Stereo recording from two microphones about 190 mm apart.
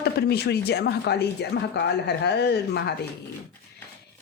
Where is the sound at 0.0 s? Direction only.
60° left (ahead or behind).